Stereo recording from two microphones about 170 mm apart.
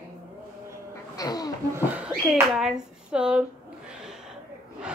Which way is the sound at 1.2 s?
20° left (ahead or behind).